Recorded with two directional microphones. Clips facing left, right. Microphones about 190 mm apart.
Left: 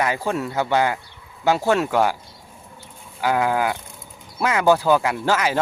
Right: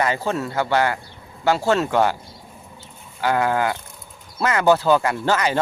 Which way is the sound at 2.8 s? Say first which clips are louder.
Even; 10° left (ahead or behind).